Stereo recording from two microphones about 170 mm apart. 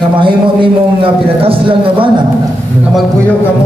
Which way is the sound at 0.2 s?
30° right (ahead or behind).